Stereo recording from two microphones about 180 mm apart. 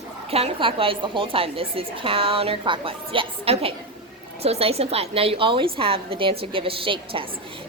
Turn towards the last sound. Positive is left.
turn(degrees=-30)  # may be behind; listen again after turning